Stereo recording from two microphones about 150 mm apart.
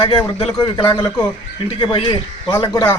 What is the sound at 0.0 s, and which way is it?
A man's voice, 35° left (ahead or behind).